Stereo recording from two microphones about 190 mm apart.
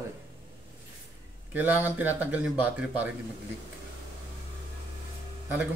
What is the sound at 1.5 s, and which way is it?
A man's voice, 10° right (ahead or behind).